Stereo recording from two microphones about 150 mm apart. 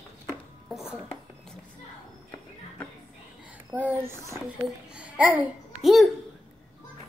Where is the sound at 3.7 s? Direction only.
15° right (ahead or behind).